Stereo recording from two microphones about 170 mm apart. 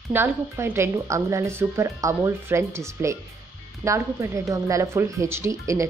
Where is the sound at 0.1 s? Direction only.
15° right (ahead or behind).